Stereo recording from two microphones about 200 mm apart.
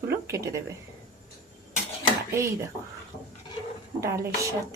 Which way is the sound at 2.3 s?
15° right (ahead or behind).